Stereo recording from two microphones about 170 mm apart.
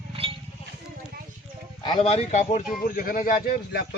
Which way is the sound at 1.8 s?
35° left (ahead or behind).